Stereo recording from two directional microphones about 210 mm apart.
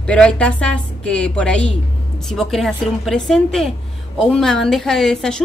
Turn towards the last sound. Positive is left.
turn(degrees=0)  # may be behind; listen again after turning